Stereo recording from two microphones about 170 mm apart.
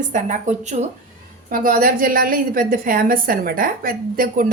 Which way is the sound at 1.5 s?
55° right (ahead or behind).